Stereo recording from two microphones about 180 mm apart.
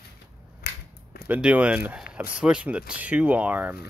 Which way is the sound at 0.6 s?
60° left (ahead or behind).